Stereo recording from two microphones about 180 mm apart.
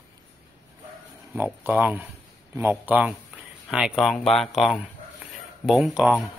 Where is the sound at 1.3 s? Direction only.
10° right (ahead or behind).